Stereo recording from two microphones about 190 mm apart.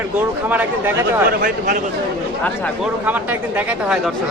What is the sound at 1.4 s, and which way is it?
Speech, 50° right (ahead or behind).